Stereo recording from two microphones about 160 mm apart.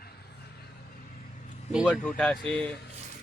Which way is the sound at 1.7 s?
Centre (ahead or behind).